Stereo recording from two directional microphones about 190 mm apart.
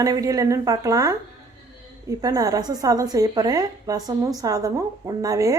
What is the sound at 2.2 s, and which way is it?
A woman's voice, 20° right (ahead or behind).